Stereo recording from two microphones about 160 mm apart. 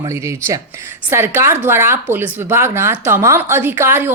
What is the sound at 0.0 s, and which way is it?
Speech, 20° right (ahead or behind).